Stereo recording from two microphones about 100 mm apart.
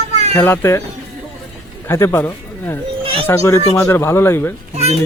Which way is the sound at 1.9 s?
25° left (ahead or behind).